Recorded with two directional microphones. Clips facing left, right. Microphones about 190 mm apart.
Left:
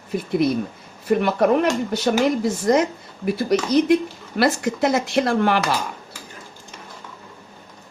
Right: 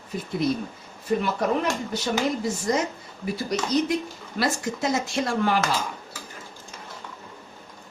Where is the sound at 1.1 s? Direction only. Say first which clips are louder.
Left 6 dB; 65° left (ahead or behind).